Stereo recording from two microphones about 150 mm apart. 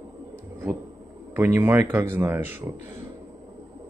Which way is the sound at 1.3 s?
15° right (ahead or behind).